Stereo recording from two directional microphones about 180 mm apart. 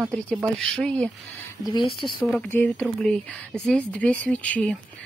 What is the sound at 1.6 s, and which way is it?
Speech, 25° left (ahead or behind).